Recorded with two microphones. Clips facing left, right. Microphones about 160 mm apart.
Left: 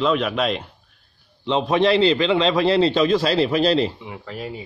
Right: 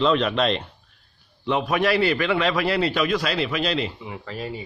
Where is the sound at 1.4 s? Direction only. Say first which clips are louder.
Left 3 dB; 20° left (ahead or behind).